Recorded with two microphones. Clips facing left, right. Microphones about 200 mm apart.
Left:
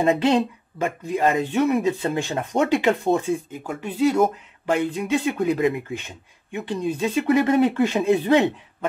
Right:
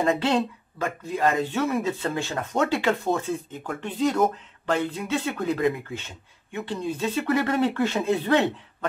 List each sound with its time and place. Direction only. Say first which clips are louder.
0.0 s speech: left 4 dB; 15° left (ahead or behind)